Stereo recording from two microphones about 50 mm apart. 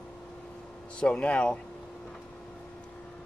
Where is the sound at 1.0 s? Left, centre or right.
Left.